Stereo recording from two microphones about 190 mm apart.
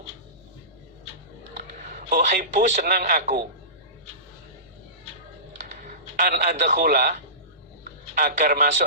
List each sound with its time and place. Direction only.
1.9 s a man's voice: 45° right (ahead or behind)
5.8 s a man's voice: 40° right (ahead or behind)